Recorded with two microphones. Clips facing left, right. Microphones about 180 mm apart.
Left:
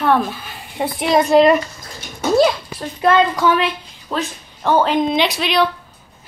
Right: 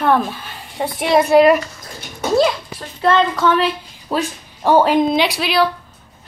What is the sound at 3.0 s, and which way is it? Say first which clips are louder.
Speech: left 1 dB; 15° left (ahead or behind).